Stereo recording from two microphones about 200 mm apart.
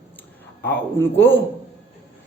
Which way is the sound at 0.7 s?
10° left (ahead or behind).